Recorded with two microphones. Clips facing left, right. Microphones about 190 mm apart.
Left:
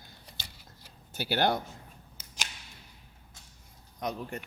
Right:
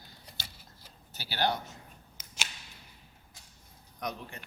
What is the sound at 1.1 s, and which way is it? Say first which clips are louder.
Speech: left 4 dB; 50° left (ahead or behind).